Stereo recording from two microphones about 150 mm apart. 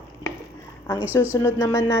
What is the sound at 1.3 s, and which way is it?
Speech, 20° left (ahead or behind).